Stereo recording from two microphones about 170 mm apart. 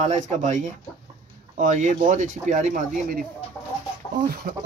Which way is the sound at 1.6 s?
50° right (ahead or behind).